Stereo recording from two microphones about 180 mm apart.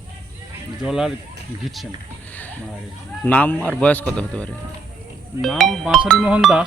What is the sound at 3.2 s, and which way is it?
A man's voice, 10° left (ahead or behind).